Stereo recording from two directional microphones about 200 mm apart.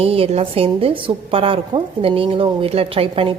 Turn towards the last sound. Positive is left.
turn(degrees=-25)  # may be behind; listen again after turning